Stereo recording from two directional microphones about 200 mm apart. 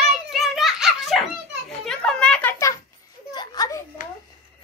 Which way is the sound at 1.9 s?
5° left (ahead or behind).